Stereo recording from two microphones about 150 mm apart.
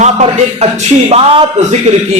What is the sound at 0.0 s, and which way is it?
Speech, 50° right (ahead or behind).